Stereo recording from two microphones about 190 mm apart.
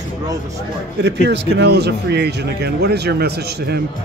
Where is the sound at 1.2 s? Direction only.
60° right (ahead or behind).